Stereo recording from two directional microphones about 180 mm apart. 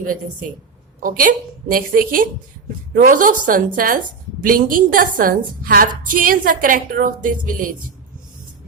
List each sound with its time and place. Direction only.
0.0 s a woman's voice: 50° right (ahead or behind)